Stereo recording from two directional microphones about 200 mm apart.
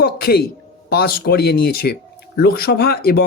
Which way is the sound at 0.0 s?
50° left (ahead or behind).